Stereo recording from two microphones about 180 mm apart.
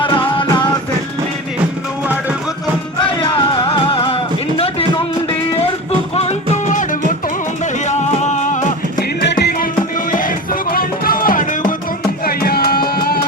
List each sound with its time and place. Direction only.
0.3 s music: 25° left (ahead or behind)
3.2 s music: 30° left (ahead or behind)
6.1 s music: 35° left (ahead or behind)
7.9 s music: 40° left (ahead or behind)
9.2 s music: 65° left (ahead or behind)
10.1 s music: 50° left (ahead or behind)